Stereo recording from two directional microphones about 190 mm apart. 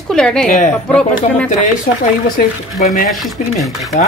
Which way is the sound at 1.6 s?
40° left (ahead or behind).